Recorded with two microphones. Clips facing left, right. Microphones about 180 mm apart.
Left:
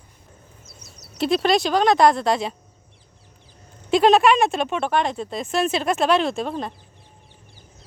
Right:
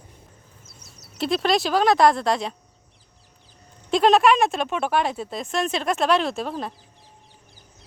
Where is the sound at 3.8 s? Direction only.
Centre (ahead or behind).